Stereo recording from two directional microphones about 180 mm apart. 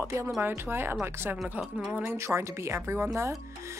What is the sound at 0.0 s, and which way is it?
Speech, 15° right (ahead or behind).